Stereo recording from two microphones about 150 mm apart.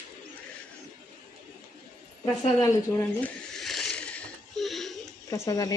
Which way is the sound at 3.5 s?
Centre (ahead or behind).